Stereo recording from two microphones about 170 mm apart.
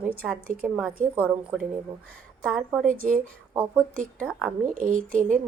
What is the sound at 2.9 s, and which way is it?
A woman's voice, 55° right (ahead or behind).